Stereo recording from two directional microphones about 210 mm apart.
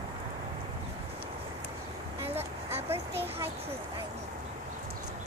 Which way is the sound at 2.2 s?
30° right (ahead or behind).